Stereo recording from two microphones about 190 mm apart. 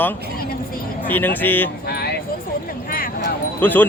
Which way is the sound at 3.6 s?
10° left (ahead or behind).